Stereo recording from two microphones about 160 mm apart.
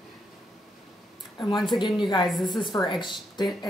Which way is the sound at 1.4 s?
30° left (ahead or behind).